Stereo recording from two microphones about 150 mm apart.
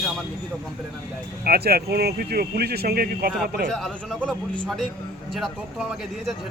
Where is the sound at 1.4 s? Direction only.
90° right.